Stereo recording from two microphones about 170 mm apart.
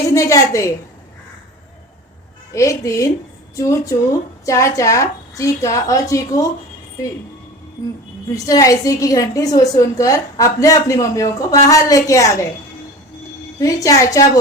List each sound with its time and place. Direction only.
0.1 s a woman's voice: 20° left (ahead or behind)
2.5 s a woman's voice: 20° left (ahead or behind)
8.4 s a woman's voice: 20° left (ahead or behind)
13.6 s a woman's voice: 20° left (ahead or behind)